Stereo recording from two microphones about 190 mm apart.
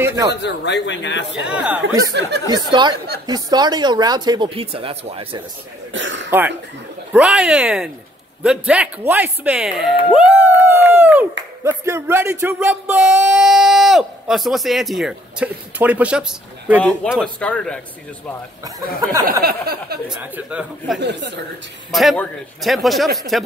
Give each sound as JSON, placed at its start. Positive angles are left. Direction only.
{"t": 0.0, "sound": "speech", "side_deg": -15}
{"t": 0.4, "sound": "speech", "side_deg": 65}
{"t": 1.4, "sound": "speech", "side_deg": -5}
{"t": 1.8, "sound": "speech", "side_deg": -65}
{"t": 2.7, "sound": "speech", "side_deg": -25}
{"t": 5.9, "sound": "speech", "side_deg": -80}
{"t": 7.1, "sound": "speech", "side_deg": -5}
{"t": 17.1, "sound": "speech", "side_deg": 5}
{"t": 18.6, "sound": "speech", "side_deg": -20}
{"t": 19.4, "sound": "a sound", "side_deg": -55}
{"t": 20.1, "sound": "speech", "side_deg": -5}
{"t": 21.0, "sound": "speech", "side_deg": -65}
{"t": 21.9, "sound": "speech", "side_deg": 5}